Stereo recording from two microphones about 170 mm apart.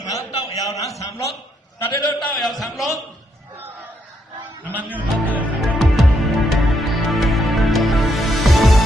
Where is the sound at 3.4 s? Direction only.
10° right (ahead or behind).